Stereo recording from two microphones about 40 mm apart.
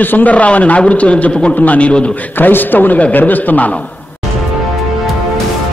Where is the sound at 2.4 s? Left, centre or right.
Left.